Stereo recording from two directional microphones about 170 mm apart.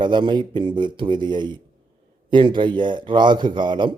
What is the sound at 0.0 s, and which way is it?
Speech, 30° right (ahead or behind).